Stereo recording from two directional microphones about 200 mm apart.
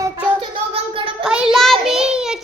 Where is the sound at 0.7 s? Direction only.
25° right (ahead or behind).